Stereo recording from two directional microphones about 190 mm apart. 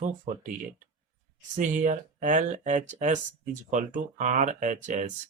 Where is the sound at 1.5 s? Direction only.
40° right (ahead or behind).